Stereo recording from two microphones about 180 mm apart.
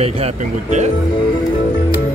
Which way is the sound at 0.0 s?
40° right (ahead or behind).